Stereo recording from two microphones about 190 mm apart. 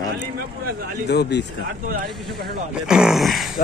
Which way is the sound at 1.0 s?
60° left (ahead or behind).